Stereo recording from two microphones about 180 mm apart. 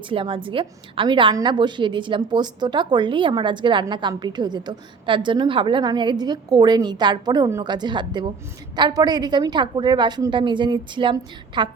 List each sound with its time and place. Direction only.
0.1 s a woman's voice: 30° right (ahead or behind)